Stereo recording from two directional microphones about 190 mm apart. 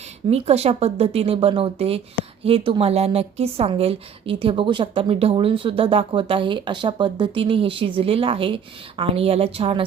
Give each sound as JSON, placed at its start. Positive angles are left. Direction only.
{"t": 0.3, "sound": "a woman's voice", "side_deg": -35}